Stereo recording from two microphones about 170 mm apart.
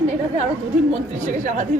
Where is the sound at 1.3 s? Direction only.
50° right (ahead or behind).